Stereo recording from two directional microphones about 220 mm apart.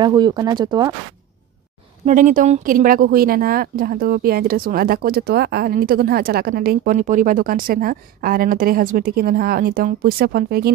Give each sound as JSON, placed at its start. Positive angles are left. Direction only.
{"t": 0.0, "sound": "speech", "side_deg": -20}
{"t": 2.0, "sound": "speech", "side_deg": -35}